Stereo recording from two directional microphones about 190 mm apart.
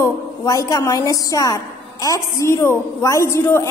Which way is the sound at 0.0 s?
15° left (ahead or behind).